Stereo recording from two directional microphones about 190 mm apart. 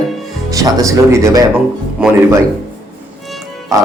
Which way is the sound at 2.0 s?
5° right (ahead or behind).